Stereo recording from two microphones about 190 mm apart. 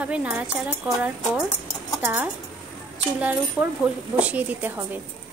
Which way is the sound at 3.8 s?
5° right (ahead or behind).